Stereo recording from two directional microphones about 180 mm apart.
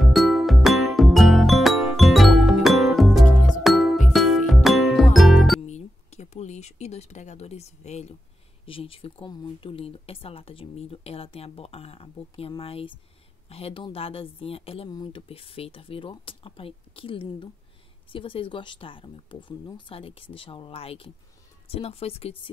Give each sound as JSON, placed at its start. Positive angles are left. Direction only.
{"t": 0.0, "sound": "music", "side_deg": 0}
{"t": 5.7, "sound": "a sound", "side_deg": 40}
{"t": 8.6, "sound": "speech", "side_deg": 30}